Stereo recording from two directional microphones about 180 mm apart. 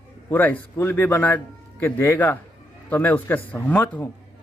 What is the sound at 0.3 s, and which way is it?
A man's voice, 10° left (ahead or behind).